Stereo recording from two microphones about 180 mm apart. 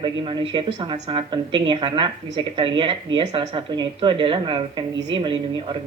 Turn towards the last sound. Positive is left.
turn(degrees=-25)  # may be behind; listen again after turning